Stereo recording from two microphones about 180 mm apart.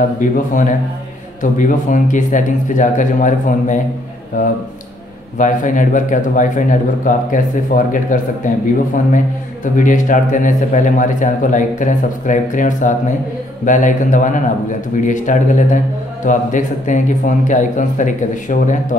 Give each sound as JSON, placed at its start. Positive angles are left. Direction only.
{"t": 0.2, "sound": "a man's voice", "side_deg": 45}
{"t": 9.8, "sound": "a man's voice", "side_deg": 45}